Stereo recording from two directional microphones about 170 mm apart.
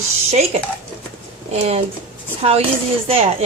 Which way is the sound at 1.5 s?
40° right (ahead or behind).